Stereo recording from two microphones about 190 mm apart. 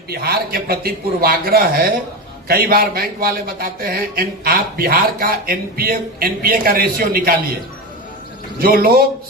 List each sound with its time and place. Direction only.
0.1 s a man's voice: 55° right (ahead or behind)
8.5 s a man's voice: 50° right (ahead or behind)